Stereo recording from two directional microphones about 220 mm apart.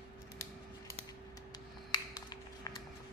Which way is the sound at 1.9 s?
20° left (ahead or behind).